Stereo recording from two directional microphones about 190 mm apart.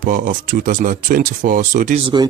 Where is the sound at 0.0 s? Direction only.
45° right (ahead or behind).